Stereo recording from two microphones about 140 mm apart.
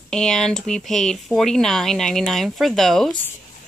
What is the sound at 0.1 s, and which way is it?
Speech, 5° left (ahead or behind).